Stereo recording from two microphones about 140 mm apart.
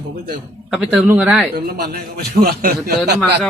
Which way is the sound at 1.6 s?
90° right.